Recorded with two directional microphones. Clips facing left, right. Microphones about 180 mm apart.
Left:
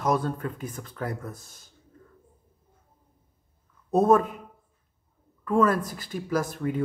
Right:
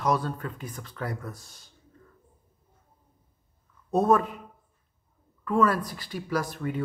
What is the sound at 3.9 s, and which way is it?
Speech, 45° left (ahead or behind).